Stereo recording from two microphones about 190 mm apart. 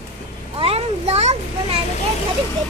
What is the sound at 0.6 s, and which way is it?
A child's voice, 30° right (ahead or behind).